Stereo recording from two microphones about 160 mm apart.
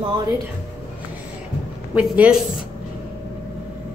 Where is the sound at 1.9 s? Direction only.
5° right (ahead or behind).